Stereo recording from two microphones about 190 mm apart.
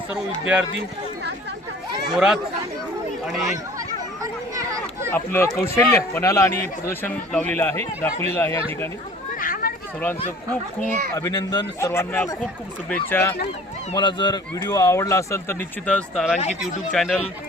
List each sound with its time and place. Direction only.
0.1 s speech: 5° right (ahead or behind)
2.1 s speech: 5° right (ahead or behind)
3.8 s a sound: 20° right (ahead or behind)
5.1 s a man's voice: 15° left (ahead or behind)
9.4 s children playing: 50° left (ahead or behind)
11.1 s a man's voice: 15° left (ahead or behind)
13.9 s a man's voice: 25° left (ahead or behind); by 17.2 s 5° left (ahead or behind)